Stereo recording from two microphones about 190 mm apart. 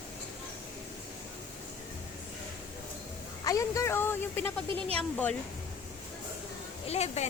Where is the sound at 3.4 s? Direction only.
15° left (ahead or behind).